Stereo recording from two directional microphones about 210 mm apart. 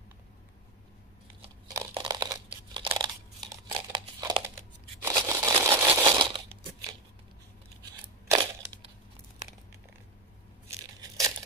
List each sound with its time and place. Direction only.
1.7 s crunch: 15° right (ahead or behind)
3.7 s crumpling: 20° right (ahead or behind)
5.0 s a sound: 15° right (ahead or behind)
5.9 s crushing: 20° right (ahead or behind)
8.3 s crushing: 25° right (ahead or behind)
11.0 s crushing: 15° right (ahead or behind)